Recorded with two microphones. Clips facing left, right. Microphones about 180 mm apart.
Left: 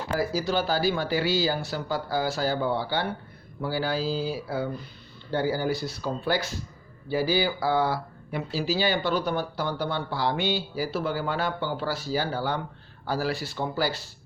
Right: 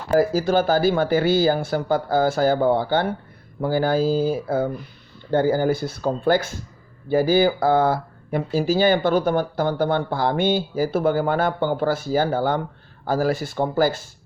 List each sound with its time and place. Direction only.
0.2 s speech: 50° right (ahead or behind)